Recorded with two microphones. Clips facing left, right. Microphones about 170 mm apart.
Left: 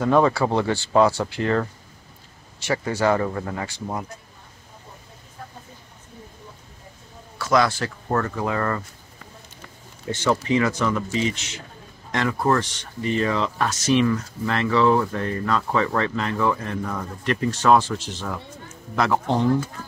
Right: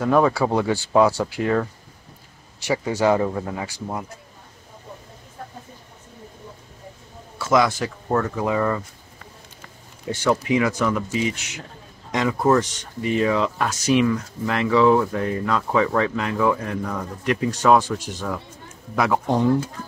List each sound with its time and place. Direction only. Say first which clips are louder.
0.0 s speech: even; 5° right (ahead or behind)
7.3 s a man's voice: right 1 dB; 20° right (ahead or behind)
8.1 s speech: right 2 dB; 5° right (ahead or behind)
10.0 s speech: right 1 dB; 5° right (ahead or behind)
17.2 s speech: right 2 dB; 10° right (ahead or behind)